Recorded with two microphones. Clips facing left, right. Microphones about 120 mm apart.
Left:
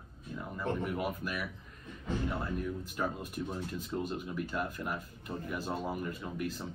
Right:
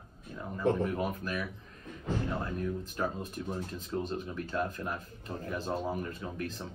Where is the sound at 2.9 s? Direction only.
10° left (ahead or behind).